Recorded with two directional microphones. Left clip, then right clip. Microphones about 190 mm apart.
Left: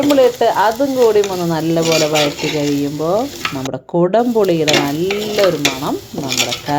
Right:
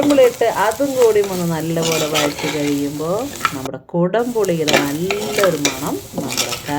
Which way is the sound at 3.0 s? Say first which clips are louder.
Left 4 dB; 35° left (ahead or behind).